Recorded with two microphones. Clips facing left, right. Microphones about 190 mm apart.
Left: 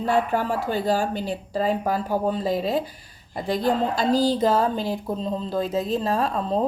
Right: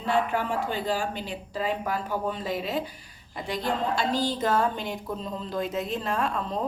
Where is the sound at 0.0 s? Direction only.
40° left (ahead or behind).